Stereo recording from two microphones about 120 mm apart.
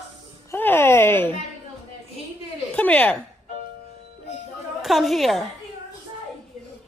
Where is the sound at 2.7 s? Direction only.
15° left (ahead or behind).